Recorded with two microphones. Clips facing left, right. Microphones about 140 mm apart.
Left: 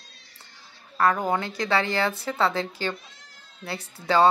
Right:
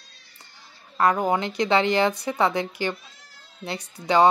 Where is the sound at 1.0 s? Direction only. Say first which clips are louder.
Right 2 dB; 20° right (ahead or behind).